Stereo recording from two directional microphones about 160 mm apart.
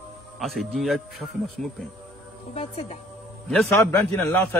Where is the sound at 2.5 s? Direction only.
45° left (ahead or behind).